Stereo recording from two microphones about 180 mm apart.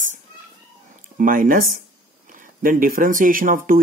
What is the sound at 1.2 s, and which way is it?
Speech, 50° right (ahead or behind).